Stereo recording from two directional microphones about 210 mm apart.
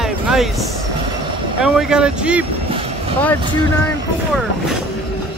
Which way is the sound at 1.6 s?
5° right (ahead or behind).